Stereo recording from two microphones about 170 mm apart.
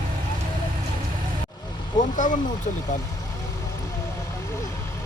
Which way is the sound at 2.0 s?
50° left (ahead or behind).